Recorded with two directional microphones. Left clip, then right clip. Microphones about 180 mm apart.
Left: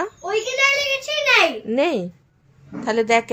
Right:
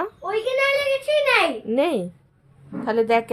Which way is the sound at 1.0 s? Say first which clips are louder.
Left 1 dB; 5° right (ahead or behind).